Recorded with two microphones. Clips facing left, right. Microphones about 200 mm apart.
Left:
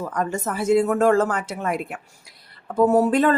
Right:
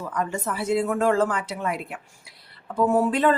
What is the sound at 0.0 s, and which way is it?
A woman's voice, 45° left (ahead or behind).